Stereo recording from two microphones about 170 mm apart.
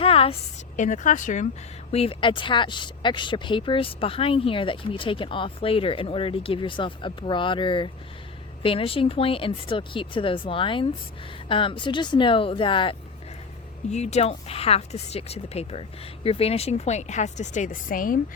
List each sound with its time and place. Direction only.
0.0 s a sound: 35° left (ahead or behind)
0.8 s speech: 50° left (ahead or behind)
1.9 s a woman's voice: 35° left (ahead or behind)
13.9 s a woman's voice: 40° left (ahead or behind)